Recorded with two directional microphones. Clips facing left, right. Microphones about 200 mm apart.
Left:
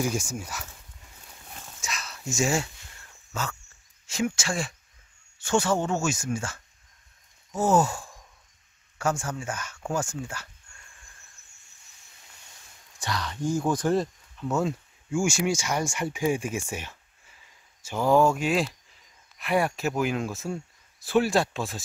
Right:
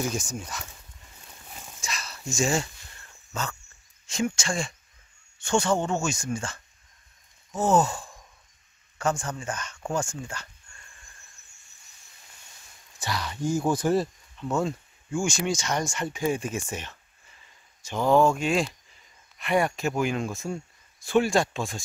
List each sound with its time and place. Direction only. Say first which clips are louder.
0.0 s speech: left 2 dB; 10° left (ahead or behind)
1.2 s a sound: even; 5° right (ahead or behind)
4.0 s speech: even; 5° left (ahead or behind)
7.5 s sigh: even; 10° left (ahead or behind)
8.9 s speech: even; 5° left (ahead or behind)
13.0 s speech: even; 5° right (ahead or behind)